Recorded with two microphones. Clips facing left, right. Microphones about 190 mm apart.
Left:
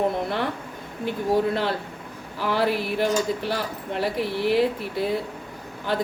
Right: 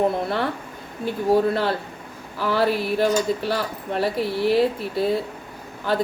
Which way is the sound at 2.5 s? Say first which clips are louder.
Right 2 dB; 15° left (ahead or behind).